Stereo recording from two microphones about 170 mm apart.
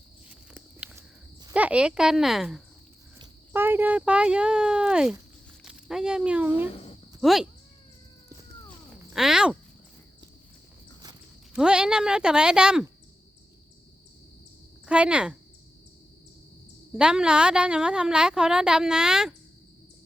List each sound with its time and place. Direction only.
0.5 s walk: 10° right (ahead or behind)
1.5 s a woman's voice: 5° right (ahead or behind)
3.5 s a woman's voice: 10° right (ahead or behind)
6.7 s cricket: 35° left (ahead or behind)
7.2 s speech: centre (ahead or behind)
9.1 s a woman's voice: 5° right (ahead or behind)
11.5 s a woman's voice: 5° right (ahead or behind)
14.8 s a woman's voice: 5° right (ahead or behind)
16.9 s a woman's voice: 5° right (ahead or behind)